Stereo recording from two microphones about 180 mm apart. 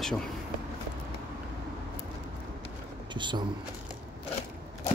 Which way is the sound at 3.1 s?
25° right (ahead or behind).